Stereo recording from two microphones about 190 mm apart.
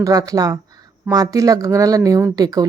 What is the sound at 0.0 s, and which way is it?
Speech, 20° right (ahead or behind).